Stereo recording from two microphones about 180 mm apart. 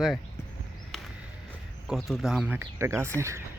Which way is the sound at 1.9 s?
Centre (ahead or behind).